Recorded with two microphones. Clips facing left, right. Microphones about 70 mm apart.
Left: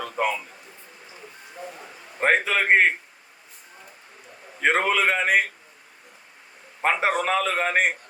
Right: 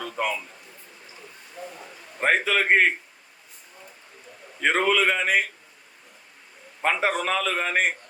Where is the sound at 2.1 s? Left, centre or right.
Centre.